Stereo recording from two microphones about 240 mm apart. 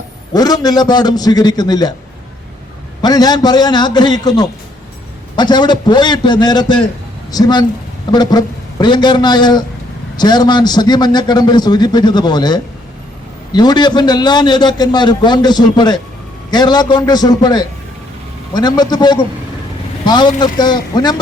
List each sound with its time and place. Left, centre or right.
0.3 s a man's voice: centre
3.0 s a man's voice: centre